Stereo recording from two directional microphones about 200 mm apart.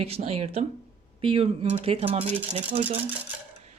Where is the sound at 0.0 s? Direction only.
30° right (ahead or behind).